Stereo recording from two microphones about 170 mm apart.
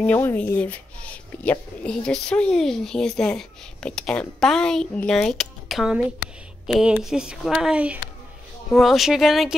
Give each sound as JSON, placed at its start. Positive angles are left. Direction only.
{"t": 0.0, "sound": "speech", "side_deg": 10}